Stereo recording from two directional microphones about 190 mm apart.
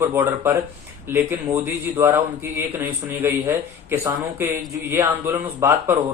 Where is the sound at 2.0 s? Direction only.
10° right (ahead or behind).